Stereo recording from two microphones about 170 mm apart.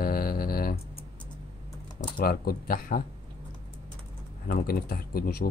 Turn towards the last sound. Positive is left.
turn(degrees=65)  # may be behind; listen again after turning